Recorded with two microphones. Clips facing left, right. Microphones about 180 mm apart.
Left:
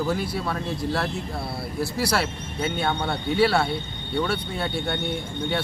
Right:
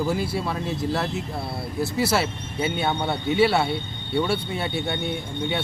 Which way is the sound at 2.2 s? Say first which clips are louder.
Right 1 dB; 5° right (ahead or behind).